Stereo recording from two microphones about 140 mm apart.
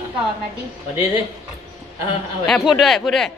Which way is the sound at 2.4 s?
Centre (ahead or behind).